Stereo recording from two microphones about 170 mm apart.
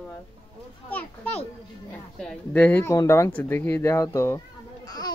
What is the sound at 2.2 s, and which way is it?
A child's voice, 5° left (ahead or behind).